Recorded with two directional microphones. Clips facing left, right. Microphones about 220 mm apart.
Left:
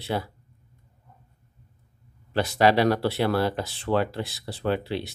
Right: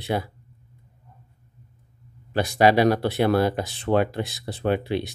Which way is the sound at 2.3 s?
15° right (ahead or behind).